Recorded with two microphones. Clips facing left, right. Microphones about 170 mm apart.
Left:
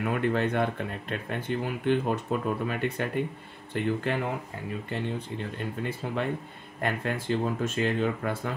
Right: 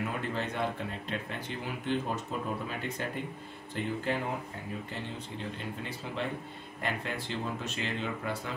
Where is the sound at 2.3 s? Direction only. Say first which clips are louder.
Left 6 dB; 60° left (ahead or behind).